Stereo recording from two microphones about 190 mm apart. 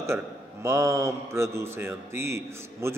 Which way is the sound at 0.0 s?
15° right (ahead or behind).